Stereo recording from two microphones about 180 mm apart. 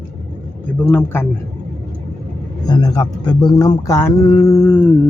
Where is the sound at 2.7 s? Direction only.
20° left (ahead or behind).